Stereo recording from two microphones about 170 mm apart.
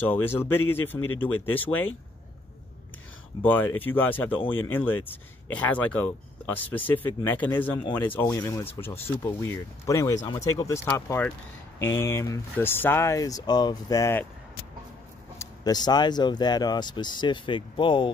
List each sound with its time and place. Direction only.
0.0 s speech: 10° left (ahead or behind)
3.4 s speech: 10° left (ahead or behind)
15.3 s speech: 25° left (ahead or behind)